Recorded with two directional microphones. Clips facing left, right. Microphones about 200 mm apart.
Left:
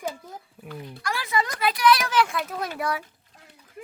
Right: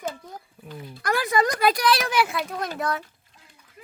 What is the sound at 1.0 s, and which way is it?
Speech, 50° right (ahead or behind).